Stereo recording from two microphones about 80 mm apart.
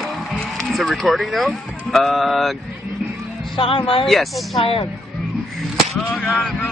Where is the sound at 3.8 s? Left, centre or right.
Left.